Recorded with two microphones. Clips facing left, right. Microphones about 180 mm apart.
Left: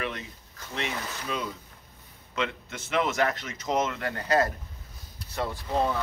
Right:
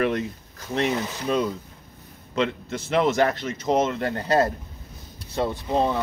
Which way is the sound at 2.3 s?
35° right (ahead or behind).